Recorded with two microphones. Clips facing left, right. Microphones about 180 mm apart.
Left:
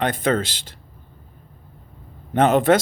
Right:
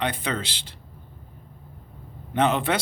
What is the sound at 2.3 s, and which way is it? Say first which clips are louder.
Speech: left 7 dB; 45° left (ahead or behind).